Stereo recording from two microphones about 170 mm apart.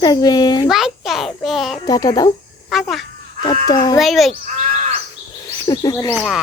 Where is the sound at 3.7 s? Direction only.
25° left (ahead or behind).